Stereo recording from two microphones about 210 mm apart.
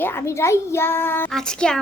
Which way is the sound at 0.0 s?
10° left (ahead or behind).